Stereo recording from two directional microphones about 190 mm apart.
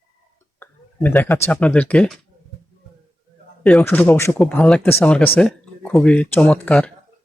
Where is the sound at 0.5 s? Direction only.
10° left (ahead or behind).